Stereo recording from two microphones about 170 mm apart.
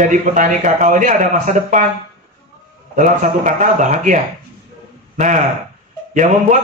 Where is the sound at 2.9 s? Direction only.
50° right (ahead or behind).